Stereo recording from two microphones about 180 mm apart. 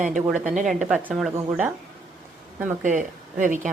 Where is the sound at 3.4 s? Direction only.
45° right (ahead or behind).